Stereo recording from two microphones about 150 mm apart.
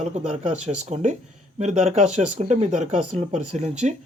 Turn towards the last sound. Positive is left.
turn(degrees=-50)  # may be behind; listen again after turning